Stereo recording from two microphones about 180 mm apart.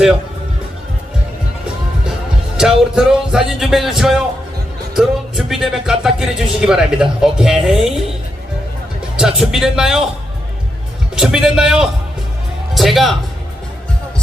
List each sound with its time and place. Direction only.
2.6 s speech: 5° right (ahead or behind)
5.5 s speech: centre (ahead or behind)
9.1 s speech: 5° right (ahead or behind)
11.1 s speech: 5° right (ahead or behind)